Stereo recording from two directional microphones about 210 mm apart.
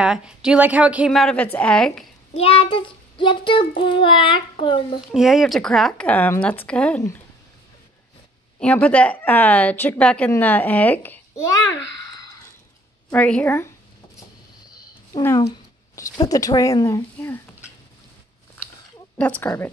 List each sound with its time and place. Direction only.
0.0 s a woman's voice: 5° right (ahead or behind)
2.3 s child singing: 25° left (ahead or behind)
5.1 s a woman's voice: centre (ahead or behind)
8.5 s a woman's voice: 5° left (ahead or behind)
13.1 s a woman's voice: 5° left (ahead or behind)
15.1 s a woman's voice: 20° left (ahead or behind)
19.1 s a woman's voice: 5° left (ahead or behind)